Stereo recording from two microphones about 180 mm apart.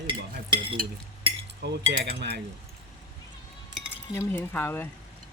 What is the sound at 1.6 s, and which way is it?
Cutlery, 70° right (ahead or behind).